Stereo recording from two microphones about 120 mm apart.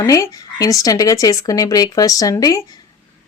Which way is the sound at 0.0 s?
25° left (ahead or behind).